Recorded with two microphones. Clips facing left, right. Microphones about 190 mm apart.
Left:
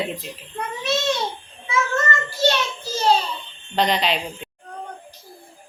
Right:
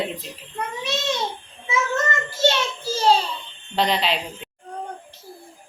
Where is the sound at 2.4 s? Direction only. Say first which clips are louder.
Even; 25° right (ahead or behind).